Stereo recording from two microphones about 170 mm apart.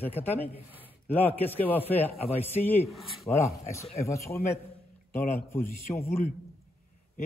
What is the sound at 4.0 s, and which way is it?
Speech, 15° left (ahead or behind).